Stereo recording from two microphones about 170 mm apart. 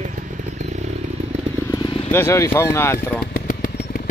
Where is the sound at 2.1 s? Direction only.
15° left (ahead or behind).